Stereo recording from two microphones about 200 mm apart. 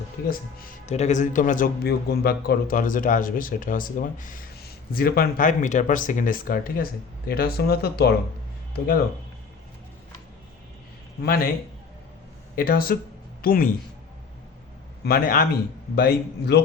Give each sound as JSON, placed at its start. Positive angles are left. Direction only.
{"t": 0.3, "sound": "speech", "side_deg": 40}
{"t": 11.2, "sound": "speech", "side_deg": 50}
{"t": 12.5, "sound": "speech", "side_deg": 50}
{"t": 15.0, "sound": "speech", "side_deg": 50}